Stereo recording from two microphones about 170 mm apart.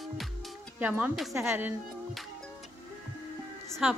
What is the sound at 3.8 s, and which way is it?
Speech, 5° right (ahead or behind).